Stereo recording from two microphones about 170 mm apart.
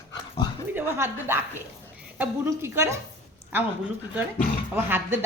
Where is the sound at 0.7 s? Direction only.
10° right (ahead or behind).